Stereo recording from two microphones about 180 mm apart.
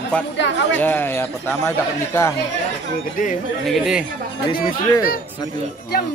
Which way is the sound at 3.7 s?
5° right (ahead or behind).